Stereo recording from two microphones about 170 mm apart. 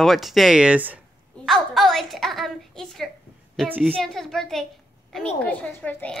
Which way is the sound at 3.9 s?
Centre (ahead or behind).